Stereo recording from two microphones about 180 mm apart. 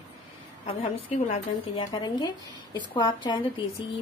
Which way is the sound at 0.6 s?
30° left (ahead or behind).